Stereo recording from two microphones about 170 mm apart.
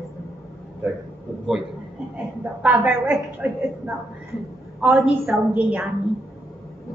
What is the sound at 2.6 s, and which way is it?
Speech, 10° right (ahead or behind).